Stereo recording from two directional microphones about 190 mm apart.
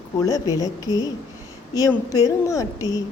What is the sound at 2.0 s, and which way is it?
Speech, 20° left (ahead or behind).